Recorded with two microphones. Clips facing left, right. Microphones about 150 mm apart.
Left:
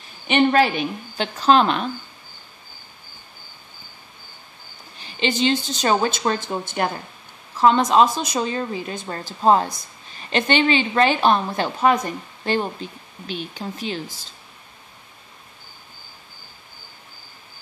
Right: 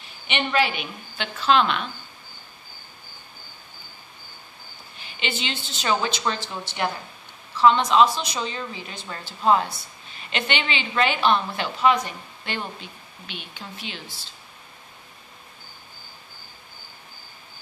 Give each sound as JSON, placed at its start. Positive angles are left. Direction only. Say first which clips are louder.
{"t": 0.3, "sound": "a woman's voice", "louder": "left 7 dB", "side_deg": 40}
{"t": 5.0, "sound": "a woman's voice", "louder": "left 10 dB", "side_deg": 40}